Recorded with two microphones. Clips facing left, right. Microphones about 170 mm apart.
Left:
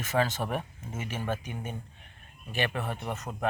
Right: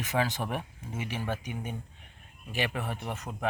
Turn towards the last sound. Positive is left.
turn(degrees=-10)  # may be behind; listen again after turning